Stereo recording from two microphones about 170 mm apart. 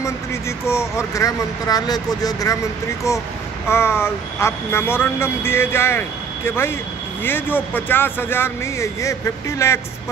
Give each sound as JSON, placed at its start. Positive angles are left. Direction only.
{"t": 0.0, "sound": "speech", "side_deg": 15}